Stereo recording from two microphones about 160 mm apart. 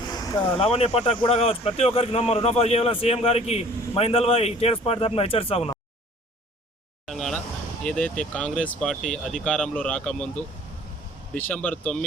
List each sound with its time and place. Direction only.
0.1 s a sound: 25° left (ahead or behind)
0.6 s speech: 40° left (ahead or behind)
7.1 s speech: 5° left (ahead or behind)